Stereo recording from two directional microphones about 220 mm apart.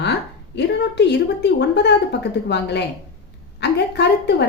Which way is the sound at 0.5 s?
50° left (ahead or behind).